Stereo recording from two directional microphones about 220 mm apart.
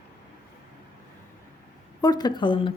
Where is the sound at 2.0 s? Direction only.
20° left (ahead or behind).